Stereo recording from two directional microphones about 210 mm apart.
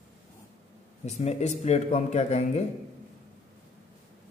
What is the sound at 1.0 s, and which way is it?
Speech, 30° left (ahead or behind).